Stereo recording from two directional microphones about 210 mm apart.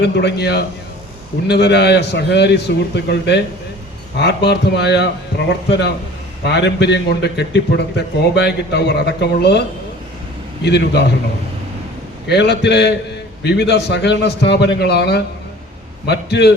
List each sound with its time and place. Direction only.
0.0 s a man's voice: 50° left (ahead or behind)
6.4 s a man's voice: 55° left (ahead or behind)
12.3 s a man's voice: 55° left (ahead or behind)